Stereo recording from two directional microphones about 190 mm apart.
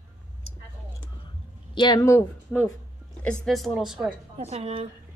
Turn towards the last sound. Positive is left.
turn(degrees=-30)  # may be behind; listen again after turning